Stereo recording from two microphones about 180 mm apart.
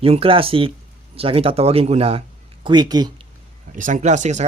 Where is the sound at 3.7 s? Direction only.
45° right (ahead or behind).